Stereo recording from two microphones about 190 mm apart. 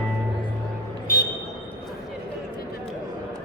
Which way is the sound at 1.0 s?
50° left (ahead or behind).